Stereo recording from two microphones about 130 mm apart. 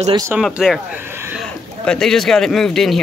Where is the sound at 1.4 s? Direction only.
5° left (ahead or behind).